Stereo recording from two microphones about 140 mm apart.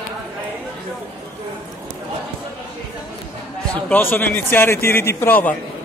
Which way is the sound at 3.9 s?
15° left (ahead or behind).